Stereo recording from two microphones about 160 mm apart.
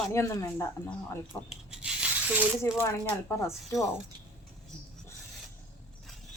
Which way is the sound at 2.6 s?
15° left (ahead or behind).